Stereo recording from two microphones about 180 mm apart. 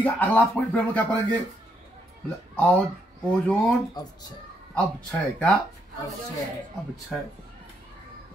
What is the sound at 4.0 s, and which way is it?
Speech, 20° left (ahead or behind).